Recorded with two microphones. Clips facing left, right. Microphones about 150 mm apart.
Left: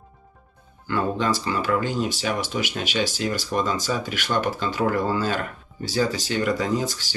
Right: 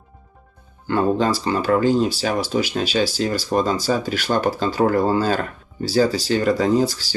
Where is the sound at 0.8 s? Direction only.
35° right (ahead or behind).